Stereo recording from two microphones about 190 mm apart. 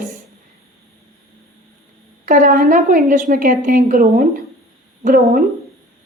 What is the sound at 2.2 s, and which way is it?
A woman's voice, 45° right (ahead or behind).